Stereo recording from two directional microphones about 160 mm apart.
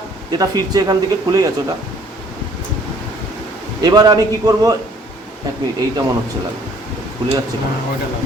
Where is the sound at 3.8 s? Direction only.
25° right (ahead or behind).